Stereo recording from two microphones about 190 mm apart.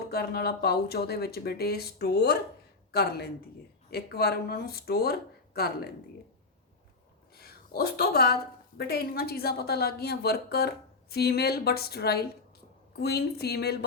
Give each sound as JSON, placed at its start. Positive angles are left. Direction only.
{"t": 0.1, "sound": "a woman's voice", "side_deg": 55}
{"t": 7.3, "sound": "a woman's voice", "side_deg": 55}